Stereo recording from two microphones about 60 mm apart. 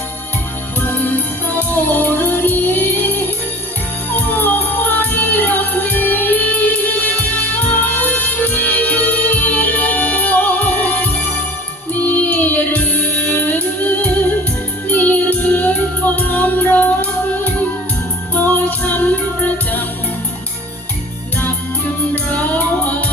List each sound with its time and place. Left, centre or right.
0.8 s music: left
4.1 s music: left
22.1 s music: left